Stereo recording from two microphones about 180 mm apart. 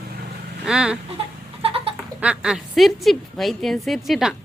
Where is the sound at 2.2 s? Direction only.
5° right (ahead or behind).